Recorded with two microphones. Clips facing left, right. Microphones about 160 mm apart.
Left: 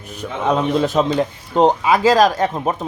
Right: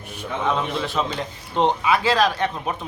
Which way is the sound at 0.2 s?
40° left (ahead or behind).